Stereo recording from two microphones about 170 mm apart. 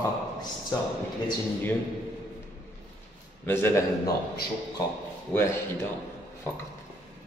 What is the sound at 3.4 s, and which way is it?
Speech, 10° left (ahead or behind).